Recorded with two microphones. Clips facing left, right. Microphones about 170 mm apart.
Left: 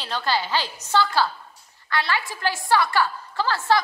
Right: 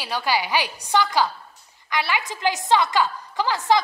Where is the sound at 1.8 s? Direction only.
15° right (ahead or behind).